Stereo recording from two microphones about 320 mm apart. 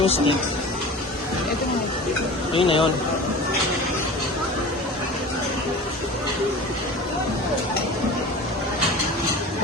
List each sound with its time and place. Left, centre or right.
0.0 s speech: centre
2.5 s speech: centre